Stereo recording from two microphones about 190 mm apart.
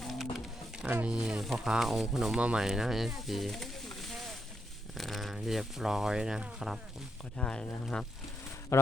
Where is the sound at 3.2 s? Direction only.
Centre (ahead or behind).